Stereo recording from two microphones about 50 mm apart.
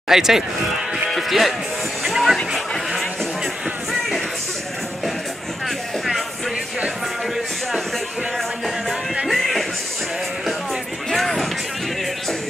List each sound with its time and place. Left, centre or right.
0.1 s speech: centre
1.1 s music: centre
9.3 s music: centre
11.1 s run: centre